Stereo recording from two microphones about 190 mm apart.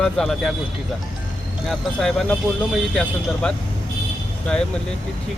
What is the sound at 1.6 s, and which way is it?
Speech, centre (ahead or behind).